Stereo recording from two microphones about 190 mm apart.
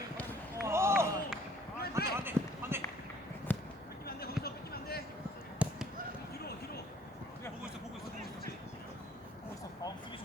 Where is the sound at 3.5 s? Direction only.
10° left (ahead or behind).